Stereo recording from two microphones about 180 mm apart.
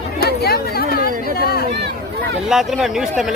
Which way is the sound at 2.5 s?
Centre (ahead or behind).